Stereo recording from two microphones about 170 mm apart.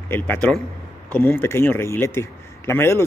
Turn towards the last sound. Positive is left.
turn(degrees=15)  # may be behind; listen again after turning